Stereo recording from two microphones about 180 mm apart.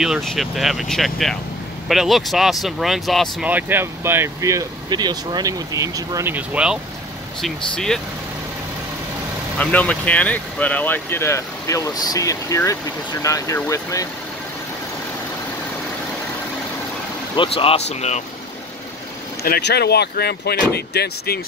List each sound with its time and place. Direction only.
0.0 s speech: centre (ahead or behind)
9.6 s speech: 10° left (ahead or behind)
17.4 s speech: 30° left (ahead or behind)
19.4 s speech: 60° left (ahead or behind)